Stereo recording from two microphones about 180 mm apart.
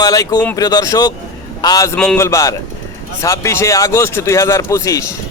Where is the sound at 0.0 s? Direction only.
20° left (ahead or behind).